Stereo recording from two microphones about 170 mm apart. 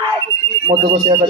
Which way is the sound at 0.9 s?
40° right (ahead or behind).